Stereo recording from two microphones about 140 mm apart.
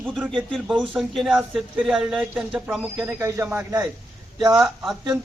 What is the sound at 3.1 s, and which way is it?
Speech, 20° right (ahead or behind).